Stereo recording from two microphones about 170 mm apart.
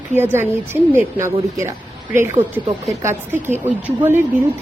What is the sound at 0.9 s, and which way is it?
Speech, 15° right (ahead or behind).